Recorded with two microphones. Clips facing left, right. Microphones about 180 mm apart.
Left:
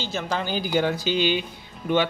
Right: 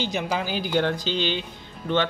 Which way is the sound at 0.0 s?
15° right (ahead or behind).